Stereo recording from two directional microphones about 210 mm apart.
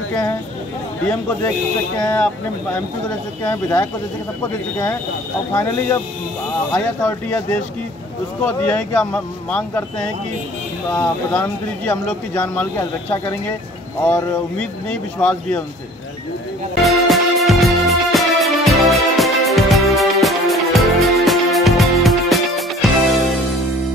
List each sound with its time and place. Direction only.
0.1 s speech: 15° left (ahead or behind)
2.0 s speech: 10° left (ahead or behind)
3.4 s speech: 15° left (ahead or behind)
5.5 s speech: 15° left (ahead or behind)
7.0 s speech: 10° left (ahead or behind)
10.9 s speech: 10° left (ahead or behind)
16.8 s music: centre (ahead or behind)